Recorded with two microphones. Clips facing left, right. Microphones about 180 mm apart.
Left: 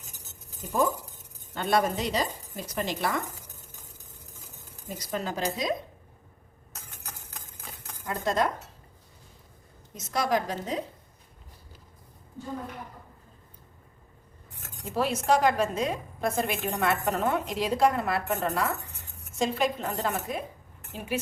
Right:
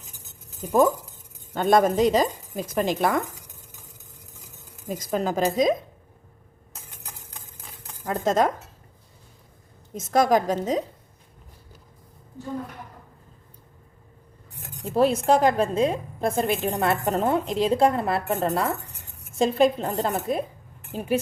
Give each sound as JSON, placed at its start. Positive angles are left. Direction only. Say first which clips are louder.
{"t": 1.5, "sound": "a woman's voice", "louder": "right 7 dB", "side_deg": -45}
{"t": 4.9, "sound": "a woman's voice", "louder": "right 7 dB", "side_deg": -45}
{"t": 8.0, "sound": "a woman's voice", "louder": "right 5 dB", "side_deg": -40}
{"t": 9.9, "sound": "a woman's voice", "louder": "right 7 dB", "side_deg": -50}
{"t": 14.8, "sound": "a woman's voice", "louder": "right 6 dB", "side_deg": -30}